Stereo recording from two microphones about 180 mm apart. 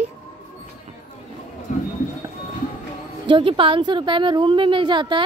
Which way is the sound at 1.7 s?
45° left (ahead or behind).